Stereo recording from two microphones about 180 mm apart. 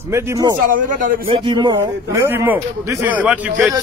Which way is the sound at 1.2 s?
25° right (ahead or behind).